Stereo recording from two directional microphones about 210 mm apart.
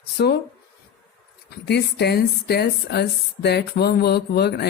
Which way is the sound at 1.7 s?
50° left (ahead or behind).